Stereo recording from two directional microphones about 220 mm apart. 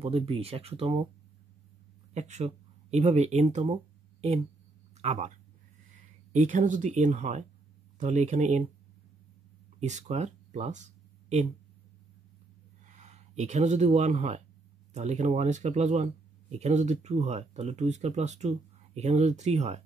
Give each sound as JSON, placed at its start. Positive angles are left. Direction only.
{"t": 0.0, "sound": "speech", "side_deg": -25}
{"t": 2.1, "sound": "speech", "side_deg": -30}
{"t": 4.9, "sound": "speech", "side_deg": -30}
{"t": 6.3, "sound": "speech", "side_deg": -35}
{"t": 9.8, "sound": "speech", "side_deg": -30}
{"t": 12.9, "sound": "speech", "side_deg": -30}